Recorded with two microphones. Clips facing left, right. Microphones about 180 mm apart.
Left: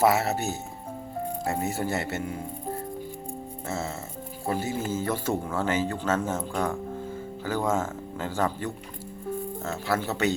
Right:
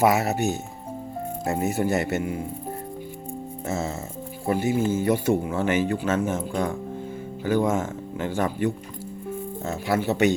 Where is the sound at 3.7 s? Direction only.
20° right (ahead or behind).